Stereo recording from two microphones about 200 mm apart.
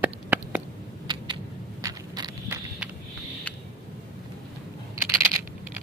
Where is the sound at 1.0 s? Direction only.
20° right (ahead or behind).